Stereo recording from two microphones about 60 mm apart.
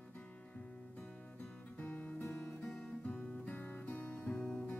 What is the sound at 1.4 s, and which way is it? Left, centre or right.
Music, left.